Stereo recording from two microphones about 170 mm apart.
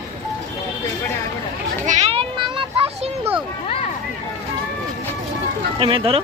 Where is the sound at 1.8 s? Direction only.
45° right (ahead or behind).